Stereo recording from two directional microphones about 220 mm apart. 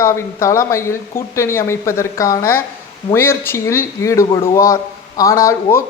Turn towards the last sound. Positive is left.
turn(degrees=15)  # may be behind; listen again after turning